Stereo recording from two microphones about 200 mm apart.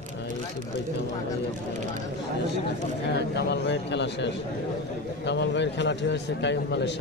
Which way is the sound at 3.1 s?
60° left (ahead or behind).